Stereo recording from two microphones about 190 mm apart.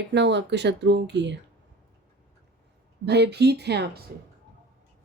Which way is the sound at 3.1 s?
60° right (ahead or behind).